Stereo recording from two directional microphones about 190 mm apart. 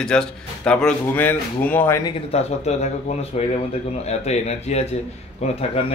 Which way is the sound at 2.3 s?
35° left (ahead or behind).